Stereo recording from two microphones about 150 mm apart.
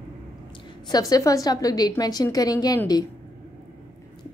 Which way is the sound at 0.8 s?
25° left (ahead or behind).